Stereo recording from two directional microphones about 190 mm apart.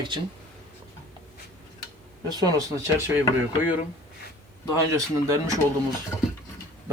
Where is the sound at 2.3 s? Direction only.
20° right (ahead or behind).